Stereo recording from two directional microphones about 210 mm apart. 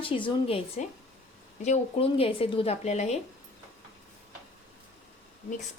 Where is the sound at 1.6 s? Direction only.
25° left (ahead or behind).